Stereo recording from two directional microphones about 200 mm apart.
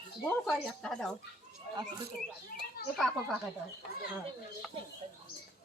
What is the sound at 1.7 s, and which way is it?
Speech, 20° right (ahead or behind).